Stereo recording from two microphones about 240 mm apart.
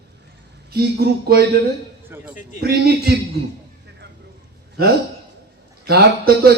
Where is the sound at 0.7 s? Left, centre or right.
Right.